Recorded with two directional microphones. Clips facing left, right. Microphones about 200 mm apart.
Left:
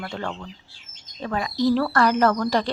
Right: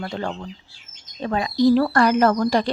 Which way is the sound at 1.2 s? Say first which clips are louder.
Right 4 dB; 25° right (ahead or behind).